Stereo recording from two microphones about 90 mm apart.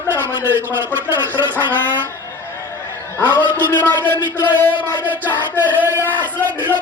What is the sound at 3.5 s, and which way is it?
Speech, 20° left (ahead or behind).